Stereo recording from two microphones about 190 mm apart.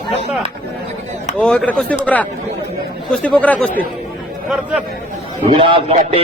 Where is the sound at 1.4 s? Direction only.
5° left (ahead or behind).